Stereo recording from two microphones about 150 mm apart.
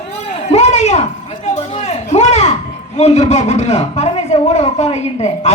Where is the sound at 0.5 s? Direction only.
45° left (ahead or behind).